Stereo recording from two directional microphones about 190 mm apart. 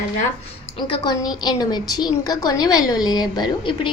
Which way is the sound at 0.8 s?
25° left (ahead or behind).